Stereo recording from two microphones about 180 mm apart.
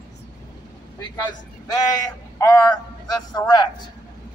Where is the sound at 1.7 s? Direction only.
20° left (ahead or behind).